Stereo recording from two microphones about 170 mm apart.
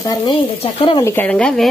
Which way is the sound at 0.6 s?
35° left (ahead or behind).